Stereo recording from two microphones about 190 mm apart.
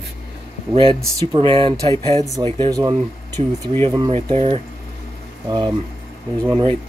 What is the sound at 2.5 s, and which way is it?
Speech, 20° right (ahead or behind).